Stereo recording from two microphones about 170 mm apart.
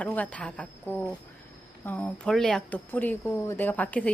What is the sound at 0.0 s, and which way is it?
A woman's voice, 10° left (ahead or behind).